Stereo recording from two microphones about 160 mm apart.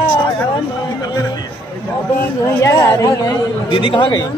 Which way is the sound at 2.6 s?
20° left (ahead or behind).